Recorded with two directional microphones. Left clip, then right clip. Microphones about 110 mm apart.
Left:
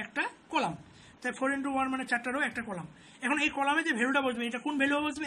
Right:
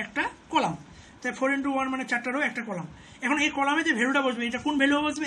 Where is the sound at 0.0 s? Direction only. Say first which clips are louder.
Right 4 dB; 25° left (ahead or behind).